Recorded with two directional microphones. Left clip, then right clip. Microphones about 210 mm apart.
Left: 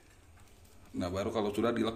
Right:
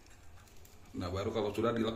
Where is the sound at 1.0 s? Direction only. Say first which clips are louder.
Left 2 dB; 25° left (ahead or behind).